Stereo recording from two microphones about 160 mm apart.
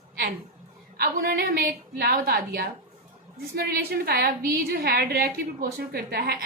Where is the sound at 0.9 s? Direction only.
70° right (ahead or behind).